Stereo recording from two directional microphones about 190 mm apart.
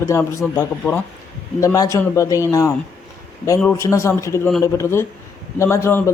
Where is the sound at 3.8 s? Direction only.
15° left (ahead or behind).